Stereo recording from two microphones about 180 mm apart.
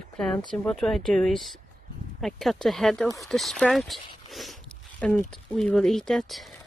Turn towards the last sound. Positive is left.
turn(degrees=0)  # may be behind; listen again after turning